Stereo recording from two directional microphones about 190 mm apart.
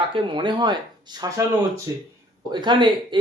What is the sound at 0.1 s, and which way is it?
Speech, 25° right (ahead or behind).